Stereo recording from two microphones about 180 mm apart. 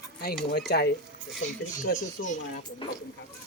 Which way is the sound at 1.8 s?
50° left (ahead or behind).